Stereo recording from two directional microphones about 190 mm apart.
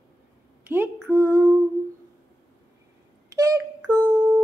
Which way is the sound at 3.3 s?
20° right (ahead or behind).